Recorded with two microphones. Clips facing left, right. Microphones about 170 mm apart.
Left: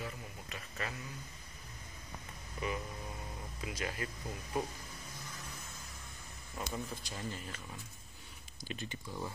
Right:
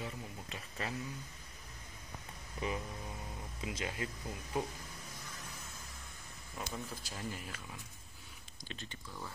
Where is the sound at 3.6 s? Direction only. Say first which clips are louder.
Even; 20° right (ahead or behind).